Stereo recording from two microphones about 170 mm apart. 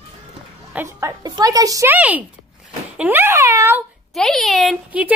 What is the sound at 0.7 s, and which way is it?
A woman's voice, 15° right (ahead or behind).